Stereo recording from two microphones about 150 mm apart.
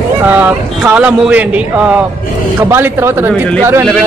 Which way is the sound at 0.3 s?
10° right (ahead or behind).